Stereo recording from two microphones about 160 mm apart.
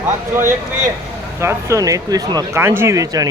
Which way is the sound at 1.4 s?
15° right (ahead or behind).